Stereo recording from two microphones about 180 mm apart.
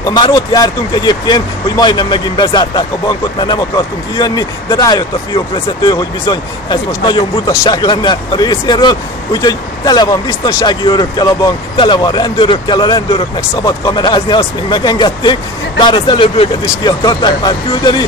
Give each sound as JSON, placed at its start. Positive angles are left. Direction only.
{"t": 0.0, "sound": "speech", "side_deg": 20}